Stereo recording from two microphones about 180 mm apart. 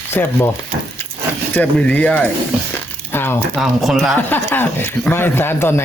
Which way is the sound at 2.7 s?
10° left (ahead or behind).